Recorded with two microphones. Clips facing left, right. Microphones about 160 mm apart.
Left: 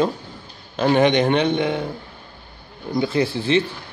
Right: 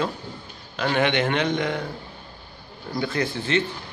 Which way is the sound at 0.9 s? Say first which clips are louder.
Left 6 dB; 35° left (ahead or behind).